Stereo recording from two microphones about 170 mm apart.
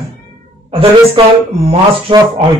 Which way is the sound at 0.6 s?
35° right (ahead or behind).